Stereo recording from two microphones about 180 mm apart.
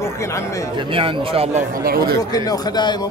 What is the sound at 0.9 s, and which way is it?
Speech, 30° right (ahead or behind).